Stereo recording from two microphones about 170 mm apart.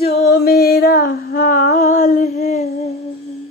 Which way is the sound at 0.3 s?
70° left (ahead or behind).